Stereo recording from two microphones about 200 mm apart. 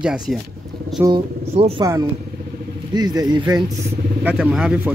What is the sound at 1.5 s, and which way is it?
Speech, 30° right (ahead or behind).